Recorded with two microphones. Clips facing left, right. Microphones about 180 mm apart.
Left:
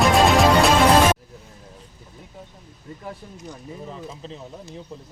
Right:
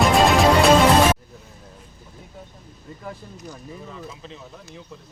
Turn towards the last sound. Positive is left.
turn(degrees=35)  # may be behind; listen again after turning